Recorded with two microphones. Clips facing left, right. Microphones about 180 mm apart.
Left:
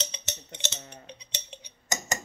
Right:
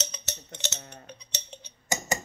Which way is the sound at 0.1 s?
20° left (ahead or behind).